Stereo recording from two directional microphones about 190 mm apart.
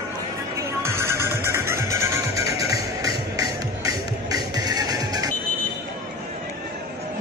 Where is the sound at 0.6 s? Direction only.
15° right (ahead or behind).